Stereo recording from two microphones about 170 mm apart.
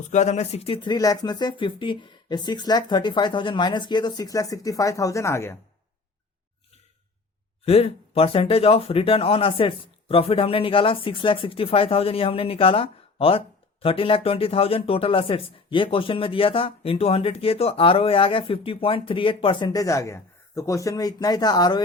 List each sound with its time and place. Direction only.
0.1 s speech: 45° left (ahead or behind); by 5.5 s 15° left (ahead or behind)
7.6 s speech: 35° left (ahead or behind)